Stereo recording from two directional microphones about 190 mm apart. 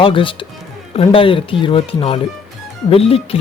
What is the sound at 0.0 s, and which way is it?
Speech, 25° left (ahead or behind).